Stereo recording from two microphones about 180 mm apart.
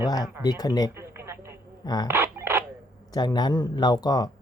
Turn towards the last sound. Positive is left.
turn(degrees=20)  # may be behind; listen again after turning